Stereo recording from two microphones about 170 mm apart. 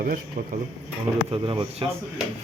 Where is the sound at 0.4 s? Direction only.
60° right (ahead or behind).